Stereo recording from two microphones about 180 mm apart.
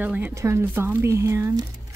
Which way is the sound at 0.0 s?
10° right (ahead or behind).